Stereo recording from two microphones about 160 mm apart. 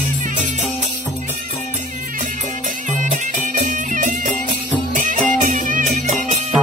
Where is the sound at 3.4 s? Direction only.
55° right (ahead or behind).